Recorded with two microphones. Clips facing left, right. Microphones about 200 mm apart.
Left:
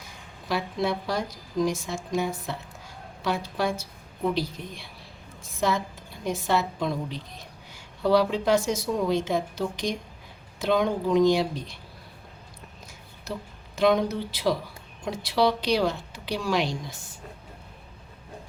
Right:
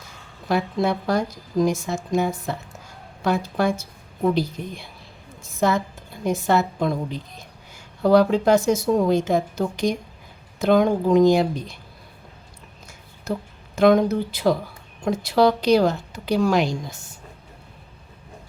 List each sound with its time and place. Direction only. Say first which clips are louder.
0.4 s a woman's voice: right 5 dB; 50° right (ahead or behind)
13.7 s a woman's voice: right 6 dB; 50° right (ahead or behind)